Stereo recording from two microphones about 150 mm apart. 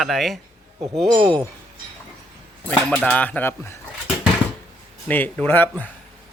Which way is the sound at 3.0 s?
10° left (ahead or behind).